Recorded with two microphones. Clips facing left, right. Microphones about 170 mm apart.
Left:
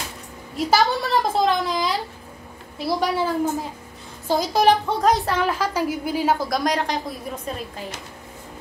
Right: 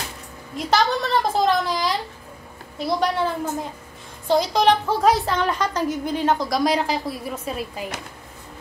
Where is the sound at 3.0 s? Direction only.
5° left (ahead or behind); by 7.9 s 10° right (ahead or behind).